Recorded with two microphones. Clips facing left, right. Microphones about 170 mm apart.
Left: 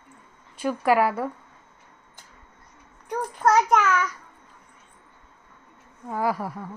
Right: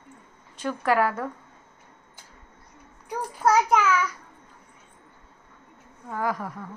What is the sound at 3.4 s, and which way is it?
Speech, 5° right (ahead or behind).